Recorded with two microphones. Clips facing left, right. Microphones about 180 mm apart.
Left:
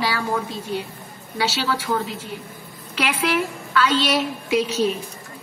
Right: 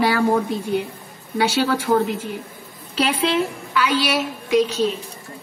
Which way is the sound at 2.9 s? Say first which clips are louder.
Right 2 dB; 30° right (ahead or behind).